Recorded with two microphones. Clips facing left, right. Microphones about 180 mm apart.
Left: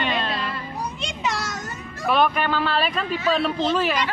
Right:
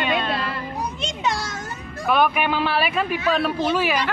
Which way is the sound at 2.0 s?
5° right (ahead or behind).